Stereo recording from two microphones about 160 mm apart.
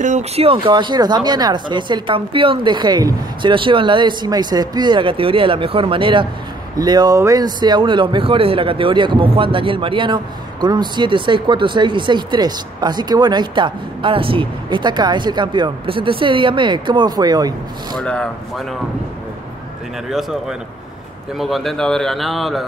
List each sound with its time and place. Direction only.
0.0 s speech: 45° right (ahead or behind); by 17.6 s 25° right (ahead or behind)
17.9 s a man's voice: 5° left (ahead or behind)
20.1 s a man's voice: centre (ahead or behind)